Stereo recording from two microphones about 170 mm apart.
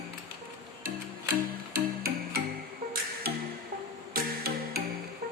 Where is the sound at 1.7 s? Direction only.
60° right (ahead or behind).